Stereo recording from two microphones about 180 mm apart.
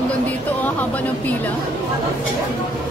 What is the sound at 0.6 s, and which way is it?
Speech, 10° left (ahead or behind).